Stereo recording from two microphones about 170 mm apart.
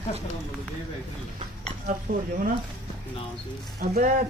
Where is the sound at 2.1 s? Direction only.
60° right (ahead or behind).